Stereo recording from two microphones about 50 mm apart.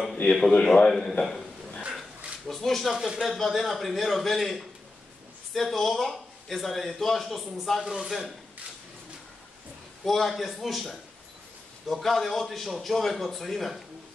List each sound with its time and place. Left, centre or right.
0.2 s a man's voice: centre
1.8 s dog: right
2.4 s a man's voice: centre
2.9 s speech: centre
3.3 s a man's voice: centre
7.8 s speech: centre
10.0 s a man's voice: centre